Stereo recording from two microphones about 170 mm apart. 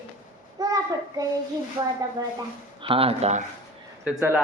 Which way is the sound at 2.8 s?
35° right (ahead or behind).